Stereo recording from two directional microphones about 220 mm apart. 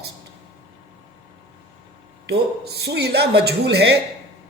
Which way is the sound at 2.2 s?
50° right (ahead or behind).